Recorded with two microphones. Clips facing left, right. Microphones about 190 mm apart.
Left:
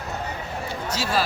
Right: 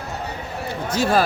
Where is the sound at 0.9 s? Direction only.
55° right (ahead or behind).